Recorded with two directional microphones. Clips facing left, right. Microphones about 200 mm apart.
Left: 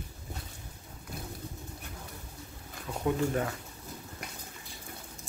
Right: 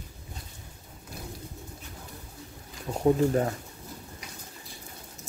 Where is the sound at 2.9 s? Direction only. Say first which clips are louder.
Right 6 dB; 40° right (ahead or behind).